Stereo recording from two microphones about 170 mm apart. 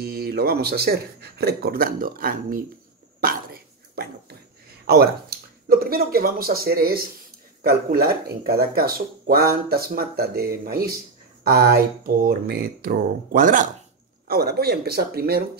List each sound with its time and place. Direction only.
0.0 s speech: 65° right (ahead or behind)
3.3 s a sound: 60° right (ahead or behind)
4.8 s speech: 65° right (ahead or behind); by 13.7 s 50° right (ahead or behind)
14.2 s speech: 65° right (ahead or behind)